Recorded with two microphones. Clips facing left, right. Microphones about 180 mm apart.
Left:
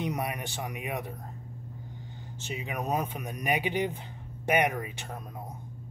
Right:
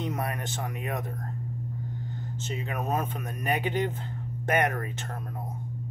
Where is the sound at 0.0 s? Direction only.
15° left (ahead or behind).